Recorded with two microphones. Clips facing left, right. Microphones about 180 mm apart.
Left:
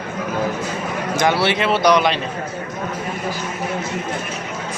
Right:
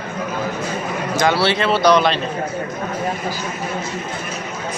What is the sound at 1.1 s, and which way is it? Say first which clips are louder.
Speech: right 1 dB; 20° left (ahead or behind).